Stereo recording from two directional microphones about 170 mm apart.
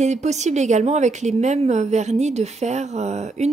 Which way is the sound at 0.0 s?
40° right (ahead or behind).